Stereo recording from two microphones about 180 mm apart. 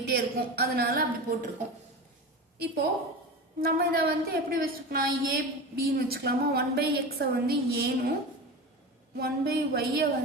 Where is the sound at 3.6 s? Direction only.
60° right (ahead or behind).